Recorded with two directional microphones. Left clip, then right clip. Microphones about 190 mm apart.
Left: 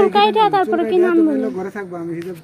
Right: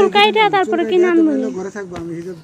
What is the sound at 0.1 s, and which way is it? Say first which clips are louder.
Speech: right 1 dB; centre (ahead or behind).